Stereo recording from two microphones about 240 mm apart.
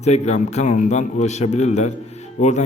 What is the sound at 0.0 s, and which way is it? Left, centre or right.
A man's voice, left.